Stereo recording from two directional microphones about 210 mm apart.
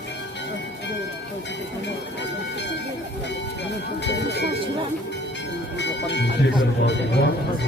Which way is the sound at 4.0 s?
55° left (ahead or behind).